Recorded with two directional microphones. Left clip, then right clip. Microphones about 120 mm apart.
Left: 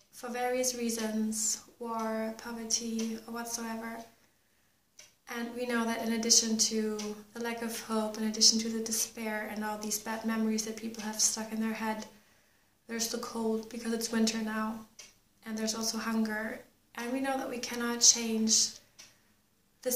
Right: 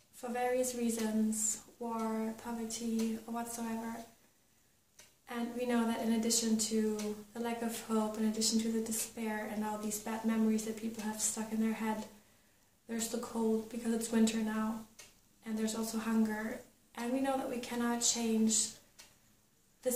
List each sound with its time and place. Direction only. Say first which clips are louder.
0.2 s a woman's voice: left 2 dB; 10° right (ahead or behind)
5.2 s a woman's voice: left 1 dB; 15° right (ahead or behind)
15.7 s a woman's voice: left 5 dB; 20° right (ahead or behind)